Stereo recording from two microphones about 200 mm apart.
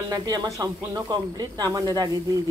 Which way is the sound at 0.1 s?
20° right (ahead or behind).